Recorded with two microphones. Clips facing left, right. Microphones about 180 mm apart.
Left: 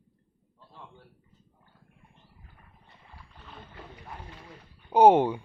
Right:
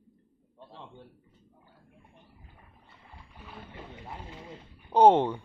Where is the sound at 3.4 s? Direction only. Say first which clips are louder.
Right 2 dB; 10° right (ahead or behind).